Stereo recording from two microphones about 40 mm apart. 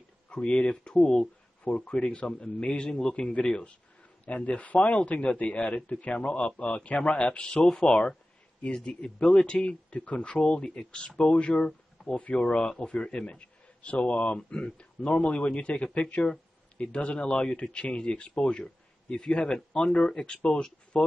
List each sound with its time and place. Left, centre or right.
0.3 s a man's voice: left
12.0 s a sound: centre
12.4 s a man's voice: left